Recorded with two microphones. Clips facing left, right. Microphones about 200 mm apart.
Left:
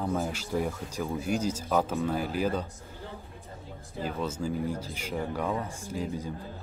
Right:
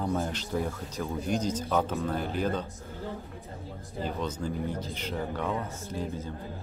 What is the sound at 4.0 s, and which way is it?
Speech, 5° left (ahead or behind).